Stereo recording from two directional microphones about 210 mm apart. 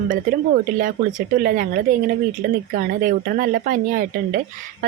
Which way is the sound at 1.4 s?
45° right (ahead or behind).